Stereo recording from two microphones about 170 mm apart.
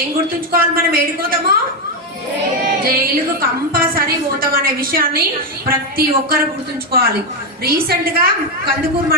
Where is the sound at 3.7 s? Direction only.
60° right (ahead or behind).